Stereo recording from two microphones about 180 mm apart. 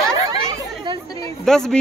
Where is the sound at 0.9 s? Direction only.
25° right (ahead or behind).